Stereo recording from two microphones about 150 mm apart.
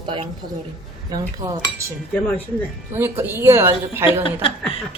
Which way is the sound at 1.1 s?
20° right (ahead or behind).